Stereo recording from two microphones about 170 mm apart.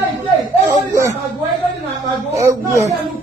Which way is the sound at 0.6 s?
15° right (ahead or behind).